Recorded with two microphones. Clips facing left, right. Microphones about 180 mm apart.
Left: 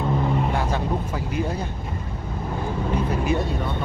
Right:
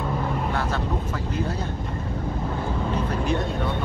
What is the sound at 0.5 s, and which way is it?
Vehicle, 15° left (ahead or behind).